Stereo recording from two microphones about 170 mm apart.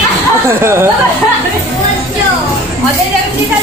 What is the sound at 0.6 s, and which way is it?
Speech, 15° right (ahead or behind).